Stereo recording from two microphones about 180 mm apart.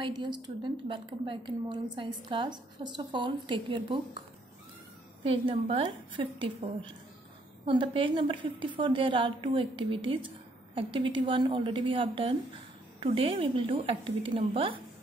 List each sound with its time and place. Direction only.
0.0 s a woman's voice: 25° right (ahead or behind)
5.2 s a woman's voice: 30° right (ahead or behind)
7.6 s a woman's voice: 30° right (ahead or behind)